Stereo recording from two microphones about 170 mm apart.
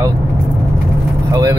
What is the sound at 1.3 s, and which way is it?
Speech, 20° right (ahead or behind).